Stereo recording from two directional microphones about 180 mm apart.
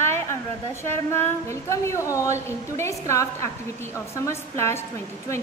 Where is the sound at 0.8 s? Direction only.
15° left (ahead or behind).